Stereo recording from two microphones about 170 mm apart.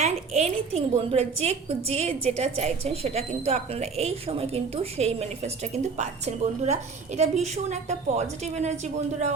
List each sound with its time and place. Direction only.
0.0 s a woman's voice: 40° right (ahead or behind)